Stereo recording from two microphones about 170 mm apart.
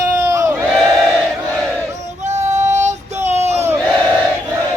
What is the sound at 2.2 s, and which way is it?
Child singing, 45° right (ahead or behind).